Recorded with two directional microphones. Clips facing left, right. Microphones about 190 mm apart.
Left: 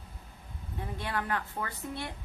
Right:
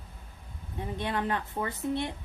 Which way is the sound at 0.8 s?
20° right (ahead or behind).